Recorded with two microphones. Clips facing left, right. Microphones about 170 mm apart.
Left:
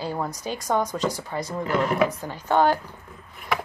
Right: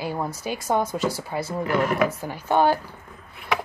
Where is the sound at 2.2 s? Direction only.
10° right (ahead or behind).